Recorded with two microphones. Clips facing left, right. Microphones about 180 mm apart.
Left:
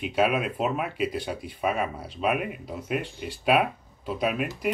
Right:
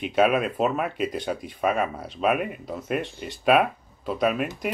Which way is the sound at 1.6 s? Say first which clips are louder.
Right 3 dB; 50° right (ahead or behind).